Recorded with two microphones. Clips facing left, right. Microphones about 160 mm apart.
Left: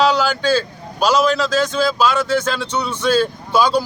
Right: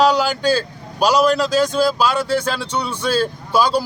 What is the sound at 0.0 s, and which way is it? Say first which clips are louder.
A man's voice: right 1 dB; 10° right (ahead or behind).